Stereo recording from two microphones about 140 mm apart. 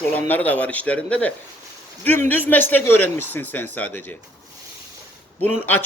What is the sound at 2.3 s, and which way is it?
Speech, 10° left (ahead or behind).